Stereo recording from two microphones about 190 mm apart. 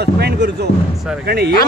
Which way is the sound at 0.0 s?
60° right (ahead or behind).